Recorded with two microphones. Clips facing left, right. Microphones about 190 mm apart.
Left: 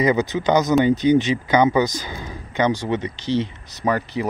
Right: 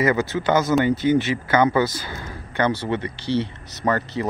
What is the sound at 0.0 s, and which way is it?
Speech, 20° left (ahead or behind).